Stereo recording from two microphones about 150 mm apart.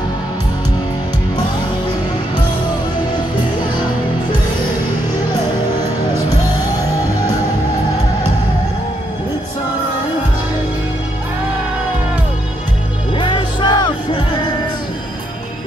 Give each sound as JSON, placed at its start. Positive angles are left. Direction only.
{"t": 13.1, "sound": "music", "side_deg": 30}